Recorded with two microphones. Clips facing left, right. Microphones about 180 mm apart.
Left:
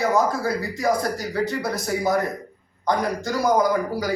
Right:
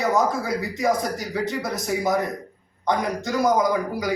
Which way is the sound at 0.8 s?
Centre (ahead or behind).